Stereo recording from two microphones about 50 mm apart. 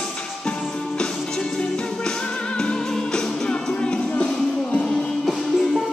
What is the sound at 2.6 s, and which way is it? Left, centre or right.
Music, centre.